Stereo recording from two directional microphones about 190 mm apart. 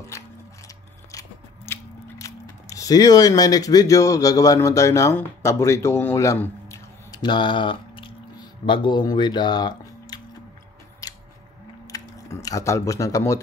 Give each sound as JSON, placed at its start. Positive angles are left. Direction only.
{"t": 1.7, "sound": "speech", "side_deg": 15}
{"t": 11.0, "sound": "scissors", "side_deg": 20}
{"t": 11.9, "sound": "typing", "side_deg": 15}